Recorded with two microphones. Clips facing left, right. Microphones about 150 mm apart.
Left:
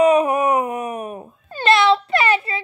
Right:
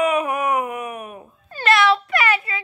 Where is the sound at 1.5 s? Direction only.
25° left (ahead or behind).